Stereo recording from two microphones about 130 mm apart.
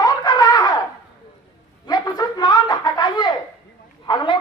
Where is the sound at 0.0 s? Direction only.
30° left (ahead or behind).